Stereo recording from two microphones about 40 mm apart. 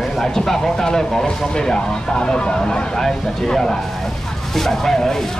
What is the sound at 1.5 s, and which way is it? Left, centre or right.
Speech, centre.